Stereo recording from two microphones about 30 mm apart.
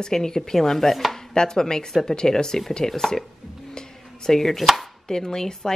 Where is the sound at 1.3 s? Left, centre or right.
Left.